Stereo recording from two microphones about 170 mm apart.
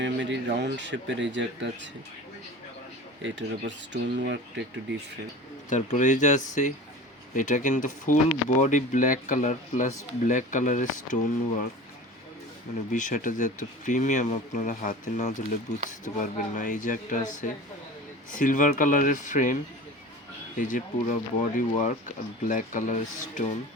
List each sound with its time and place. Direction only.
0.0 s speech: 90° right
3.2 s speech: 90° right
5.6 s speech: 45° left (ahead or behind)
12.9 s speech: 50° left (ahead or behind)
20.6 s speech: 50° left (ahead or behind)